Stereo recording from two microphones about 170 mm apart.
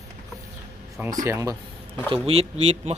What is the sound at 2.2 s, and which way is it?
Speech, 35° right (ahead or behind).